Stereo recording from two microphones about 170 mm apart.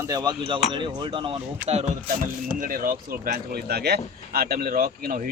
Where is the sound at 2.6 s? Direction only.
55° right (ahead or behind).